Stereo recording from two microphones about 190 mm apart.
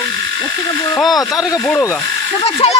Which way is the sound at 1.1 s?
20° left (ahead or behind).